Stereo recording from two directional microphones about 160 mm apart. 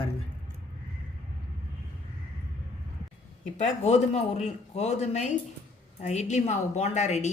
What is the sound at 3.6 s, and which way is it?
A woman's voice, 45° left (ahead or behind).